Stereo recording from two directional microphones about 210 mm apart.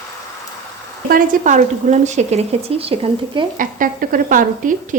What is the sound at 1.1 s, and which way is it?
A woman's voice, 40° right (ahead or behind).